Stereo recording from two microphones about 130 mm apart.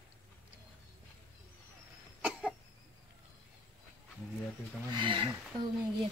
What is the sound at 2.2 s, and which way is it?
Cough, 5° right (ahead or behind).